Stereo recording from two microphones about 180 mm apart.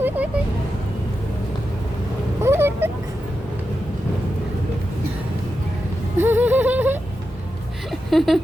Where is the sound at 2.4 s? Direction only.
10° right (ahead or behind).